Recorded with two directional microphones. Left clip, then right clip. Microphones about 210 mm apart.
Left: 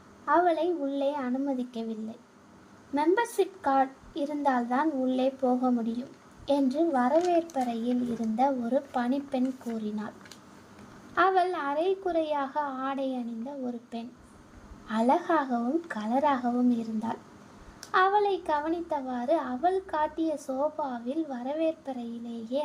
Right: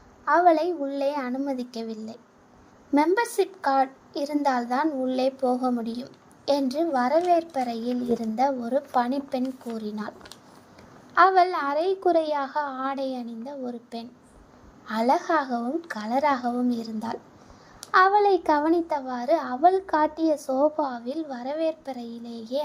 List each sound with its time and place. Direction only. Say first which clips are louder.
0.3 s a child's voice: right 5 dB; 30° right (ahead or behind)
11.3 s a child's voice: right 5 dB; 25° right (ahead or behind)